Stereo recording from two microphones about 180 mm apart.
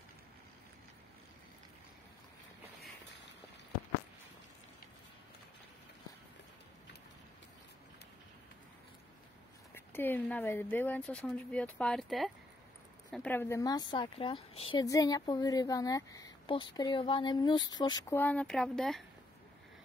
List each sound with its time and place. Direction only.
9.8 s speech: 10° left (ahead or behind); by 14.9 s 30° left (ahead or behind)
14.9 s speech: 20° left (ahead or behind)
18.1 s speech: 10° left (ahead or behind)